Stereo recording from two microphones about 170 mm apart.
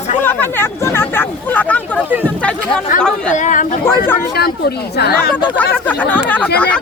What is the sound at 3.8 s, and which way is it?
Speech, 10° left (ahead or behind).